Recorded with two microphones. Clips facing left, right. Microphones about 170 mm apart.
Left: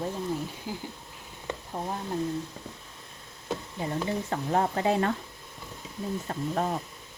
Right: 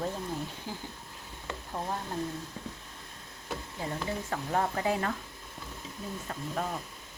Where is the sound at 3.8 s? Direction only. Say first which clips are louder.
Left 3 dB; 20° left (ahead or behind).